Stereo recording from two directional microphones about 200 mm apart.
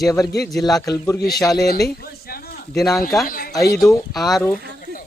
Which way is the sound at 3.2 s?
45° left (ahead or behind).